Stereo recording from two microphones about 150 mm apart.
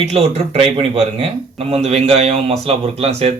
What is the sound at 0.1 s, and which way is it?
A man's voice, 45° right (ahead or behind).